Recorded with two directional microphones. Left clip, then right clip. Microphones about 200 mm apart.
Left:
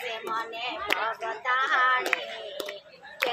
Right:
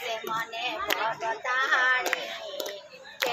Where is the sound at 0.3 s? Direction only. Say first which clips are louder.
Left 1 dB; 15° left (ahead or behind).